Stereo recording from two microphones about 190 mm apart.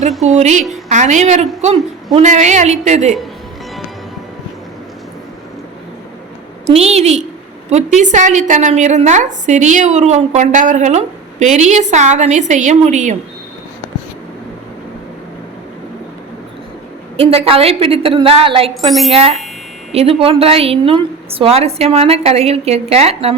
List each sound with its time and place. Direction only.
0.3 s a woman's voice: 40° right (ahead or behind)
6.7 s a woman's voice: 35° right (ahead or behind)
17.2 s a woman's voice: 30° right (ahead or behind)
18.9 s speech: centre (ahead or behind)
19.1 s a woman's voice: 30° right (ahead or behind)